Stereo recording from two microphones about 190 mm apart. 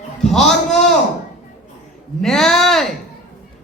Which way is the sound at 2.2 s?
Centre (ahead or behind).